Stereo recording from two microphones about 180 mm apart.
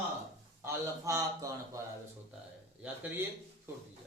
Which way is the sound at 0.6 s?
20° right (ahead or behind).